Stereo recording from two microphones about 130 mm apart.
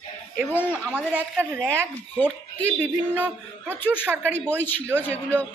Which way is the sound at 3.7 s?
15° left (ahead or behind).